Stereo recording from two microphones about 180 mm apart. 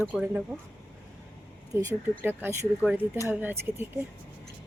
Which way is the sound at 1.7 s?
15° right (ahead or behind).